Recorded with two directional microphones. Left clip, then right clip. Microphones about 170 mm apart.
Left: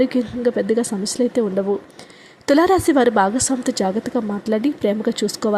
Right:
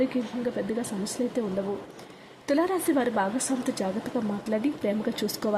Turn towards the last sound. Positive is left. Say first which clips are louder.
# left 8 dB
turn(degrees=25)  # may be behind; listen again after turning